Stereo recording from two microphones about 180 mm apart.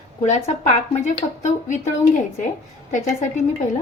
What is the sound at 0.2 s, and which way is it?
A woman's voice, 40° left (ahead or behind).